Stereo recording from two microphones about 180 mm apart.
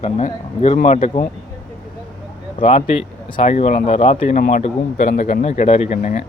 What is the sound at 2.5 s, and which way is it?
Speech, 30° left (ahead or behind).